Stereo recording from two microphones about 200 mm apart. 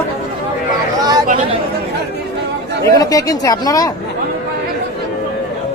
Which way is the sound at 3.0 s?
15° left (ahead or behind).